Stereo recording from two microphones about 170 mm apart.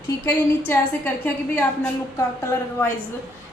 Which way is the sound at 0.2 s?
10° left (ahead or behind).